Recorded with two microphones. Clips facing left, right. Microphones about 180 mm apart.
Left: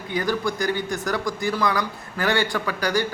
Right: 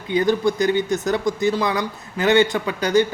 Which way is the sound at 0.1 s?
20° right (ahead or behind).